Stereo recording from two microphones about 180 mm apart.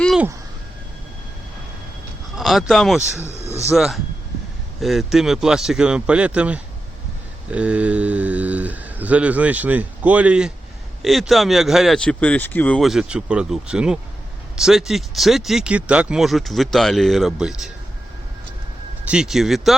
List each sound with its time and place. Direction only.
2.3 s speech: centre (ahead or behind)
3.4 s a sound: 35° right (ahead or behind)
3.7 s speech: centre (ahead or behind)
19.0 s speech: 5° right (ahead or behind)